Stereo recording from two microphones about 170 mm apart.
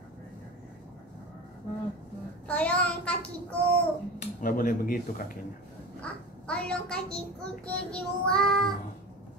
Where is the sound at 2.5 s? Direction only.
10° left (ahead or behind).